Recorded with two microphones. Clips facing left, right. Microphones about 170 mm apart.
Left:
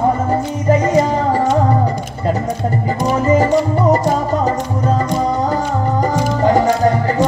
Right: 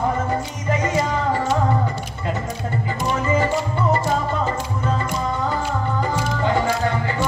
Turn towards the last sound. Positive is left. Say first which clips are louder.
# left 7 dB
turn(degrees=40)  # may be behind; listen again after turning